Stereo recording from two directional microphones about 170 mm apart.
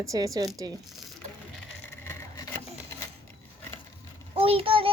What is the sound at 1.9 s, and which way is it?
Wood, 20° left (ahead or behind).